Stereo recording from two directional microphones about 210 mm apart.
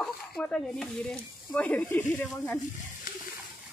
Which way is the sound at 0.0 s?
5° left (ahead or behind).